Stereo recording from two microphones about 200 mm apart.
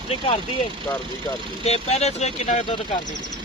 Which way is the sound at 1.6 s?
30° left (ahead or behind).